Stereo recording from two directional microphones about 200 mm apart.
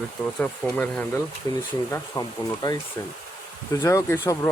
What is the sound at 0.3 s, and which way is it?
Speech, 10° left (ahead or behind).